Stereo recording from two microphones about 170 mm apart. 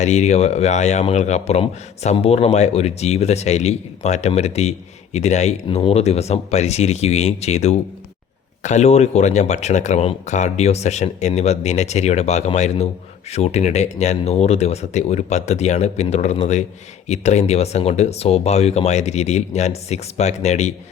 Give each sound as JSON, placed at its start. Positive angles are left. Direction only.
{"t": 0.0, "sound": "a man's voice", "side_deg": 40}